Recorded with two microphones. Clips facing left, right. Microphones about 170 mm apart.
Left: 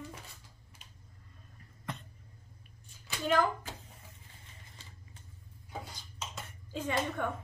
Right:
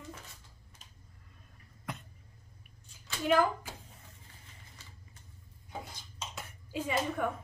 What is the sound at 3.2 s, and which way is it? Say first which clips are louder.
Speech: right 2 dB; 5° right (ahead or behind).